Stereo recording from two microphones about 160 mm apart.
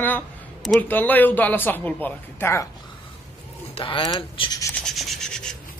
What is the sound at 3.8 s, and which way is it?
Speech, 35° left (ahead or behind).